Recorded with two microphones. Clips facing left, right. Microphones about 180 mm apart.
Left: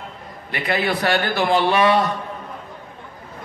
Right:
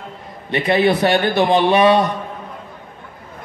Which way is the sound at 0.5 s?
20° right (ahead or behind).